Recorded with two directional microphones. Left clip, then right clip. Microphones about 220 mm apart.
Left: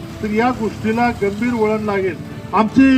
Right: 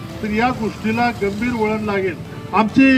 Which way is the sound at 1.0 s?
30° right (ahead or behind).